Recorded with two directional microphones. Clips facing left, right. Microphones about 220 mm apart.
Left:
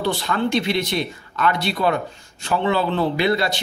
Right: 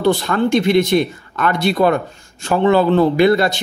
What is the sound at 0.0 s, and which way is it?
A man's voice, 50° right (ahead or behind).